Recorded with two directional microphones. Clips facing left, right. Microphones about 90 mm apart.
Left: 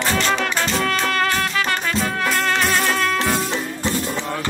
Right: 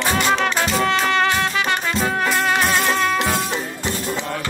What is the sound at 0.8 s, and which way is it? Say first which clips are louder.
Music: right 4 dB; 25° right (ahead or behind).